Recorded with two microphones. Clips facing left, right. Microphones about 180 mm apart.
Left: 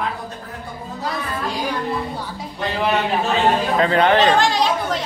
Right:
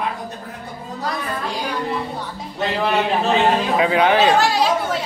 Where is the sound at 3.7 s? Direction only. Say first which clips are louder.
Even; 5° right (ahead or behind).